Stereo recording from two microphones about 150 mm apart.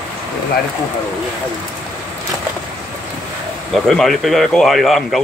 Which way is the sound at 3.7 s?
Centre (ahead or behind).